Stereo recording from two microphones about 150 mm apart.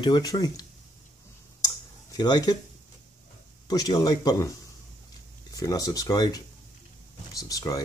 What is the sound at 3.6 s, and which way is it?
Speech, 25° left (ahead or behind).